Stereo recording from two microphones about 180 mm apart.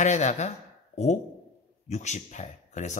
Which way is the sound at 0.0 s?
40° left (ahead or behind).